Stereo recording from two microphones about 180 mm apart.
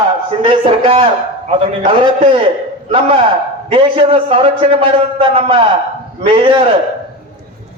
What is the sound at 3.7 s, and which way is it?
A man's voice, 30° right (ahead or behind).